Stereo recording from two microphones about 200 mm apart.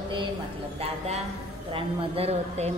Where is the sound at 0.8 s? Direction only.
30° right (ahead or behind).